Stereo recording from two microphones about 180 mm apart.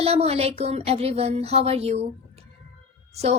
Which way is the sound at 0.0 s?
35° right (ahead or behind).